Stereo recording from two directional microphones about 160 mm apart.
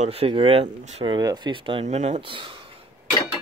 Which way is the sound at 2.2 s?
30° right (ahead or behind).